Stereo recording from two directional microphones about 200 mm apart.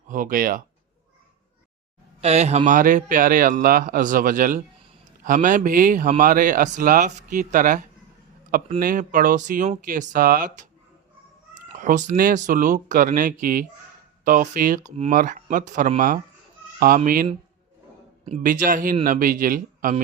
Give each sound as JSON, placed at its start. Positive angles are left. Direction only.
{"t": 0.1, "sound": "a man's voice", "side_deg": -45}
{"t": 2.2, "sound": "speech", "side_deg": -35}
{"t": 11.7, "sound": "a man's voice", "side_deg": -40}
{"t": 18.4, "sound": "a man's voice", "side_deg": -40}